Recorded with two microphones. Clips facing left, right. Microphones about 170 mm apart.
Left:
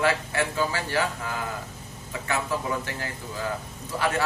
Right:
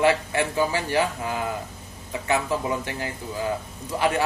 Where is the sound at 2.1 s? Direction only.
20° right (ahead or behind).